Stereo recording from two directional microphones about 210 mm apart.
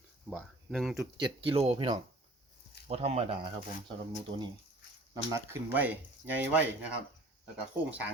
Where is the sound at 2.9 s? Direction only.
30° right (ahead or behind).